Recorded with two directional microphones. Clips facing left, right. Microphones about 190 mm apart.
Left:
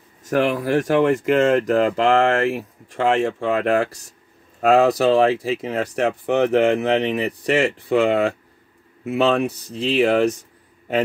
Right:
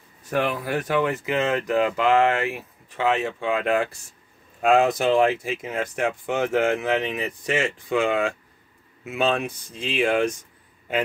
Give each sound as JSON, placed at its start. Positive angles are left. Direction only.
{"t": 0.2, "sound": "speech", "side_deg": 40}
{"t": 6.3, "sound": "speech", "side_deg": 65}
{"t": 6.6, "sound": "speech", "side_deg": 30}